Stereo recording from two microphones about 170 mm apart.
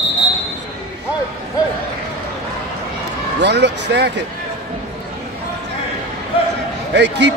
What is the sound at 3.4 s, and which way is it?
Speech, 90° right.